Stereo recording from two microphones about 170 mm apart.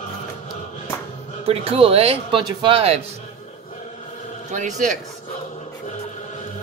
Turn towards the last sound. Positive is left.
turn(degrees=-45)  # may be behind; listen again after turning